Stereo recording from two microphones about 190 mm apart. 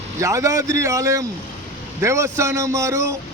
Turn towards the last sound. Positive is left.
turn(degrees=-15)  # may be behind; listen again after turning